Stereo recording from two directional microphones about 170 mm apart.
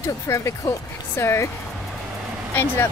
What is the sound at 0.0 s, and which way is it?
Speech, 15° left (ahead or behind).